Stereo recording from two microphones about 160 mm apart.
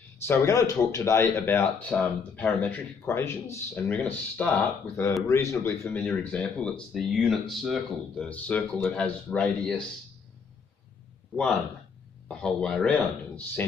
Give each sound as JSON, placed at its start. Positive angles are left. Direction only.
{"t": 0.2, "sound": "speech", "side_deg": 15}
{"t": 5.9, "sound": "speech", "side_deg": 5}
{"t": 12.3, "sound": "speech", "side_deg": 5}